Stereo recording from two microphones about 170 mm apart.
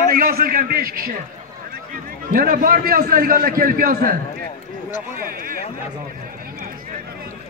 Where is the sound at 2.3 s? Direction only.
60° right (ahead or behind).